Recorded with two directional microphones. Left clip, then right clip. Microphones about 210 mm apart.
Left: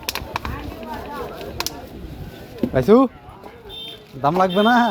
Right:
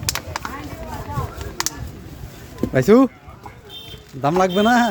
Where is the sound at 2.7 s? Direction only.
40° right (ahead or behind).